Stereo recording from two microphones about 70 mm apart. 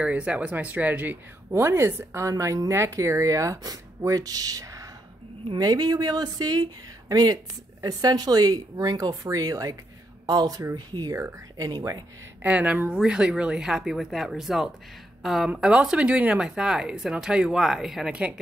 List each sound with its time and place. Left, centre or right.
0.0 s speech: centre
1.5 s a woman's voice: right
2.2 s speech: right
5.5 s speech: right
10.2 s speech: right
11.5 s speech: right
12.4 s speech: right; by 18.1 s centre